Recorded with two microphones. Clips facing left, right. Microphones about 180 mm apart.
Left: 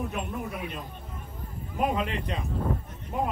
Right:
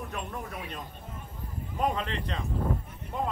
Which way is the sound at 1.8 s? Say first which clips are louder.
Left 2 dB; 10° left (ahead or behind).